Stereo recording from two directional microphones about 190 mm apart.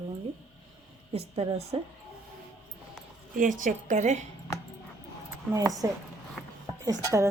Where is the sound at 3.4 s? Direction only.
45° right (ahead or behind).